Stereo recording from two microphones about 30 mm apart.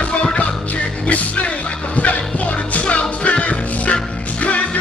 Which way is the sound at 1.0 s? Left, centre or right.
Left.